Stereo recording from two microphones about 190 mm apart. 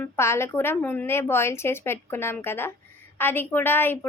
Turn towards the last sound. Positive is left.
turn(degrees=10)  # may be behind; listen again after turning